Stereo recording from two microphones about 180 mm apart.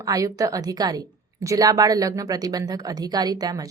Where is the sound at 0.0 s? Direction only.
20° right (ahead or behind).